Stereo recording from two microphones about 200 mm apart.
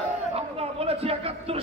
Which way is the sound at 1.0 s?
30° right (ahead or behind).